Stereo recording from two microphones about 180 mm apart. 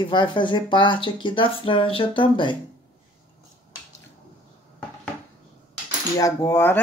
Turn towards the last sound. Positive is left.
turn(degrees=15)  # may be behind; listen again after turning